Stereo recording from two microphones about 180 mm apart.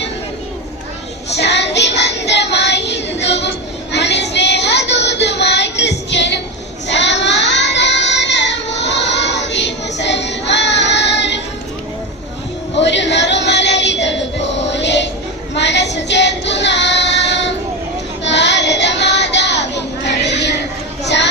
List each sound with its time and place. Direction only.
1.4 s child singing: 75° left (ahead or behind)
12.7 s choir: 80° left
15.5 s female singing: 75° left (ahead or behind)
18.2 s child singing: 75° left (ahead or behind)
20.1 s a sound: 75° left (ahead or behind)